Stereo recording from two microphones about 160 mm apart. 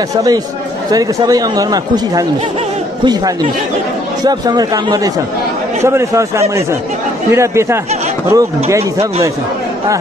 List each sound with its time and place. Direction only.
0.1 s speech: 20° right (ahead or behind)
4.2 s a man's voice: 25° right (ahead or behind)